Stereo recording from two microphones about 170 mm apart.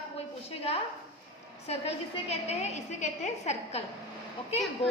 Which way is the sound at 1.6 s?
40° left (ahead or behind).